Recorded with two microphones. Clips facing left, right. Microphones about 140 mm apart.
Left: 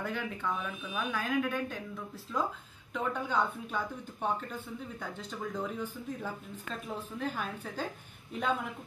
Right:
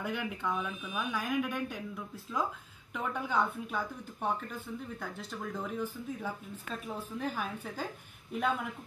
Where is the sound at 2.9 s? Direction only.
10° right (ahead or behind).